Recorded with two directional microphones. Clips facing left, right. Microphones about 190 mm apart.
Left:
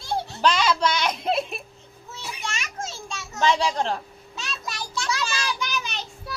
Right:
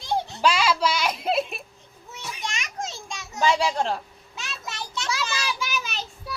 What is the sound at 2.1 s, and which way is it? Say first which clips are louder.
Children playing: even; 15° right (ahead or behind).